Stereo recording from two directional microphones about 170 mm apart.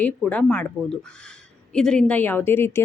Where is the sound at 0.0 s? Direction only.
5° left (ahead or behind).